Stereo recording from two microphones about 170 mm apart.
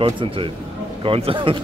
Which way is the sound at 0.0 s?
30° right (ahead or behind).